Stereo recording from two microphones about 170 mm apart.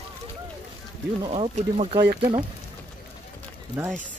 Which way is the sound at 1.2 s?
35° right (ahead or behind).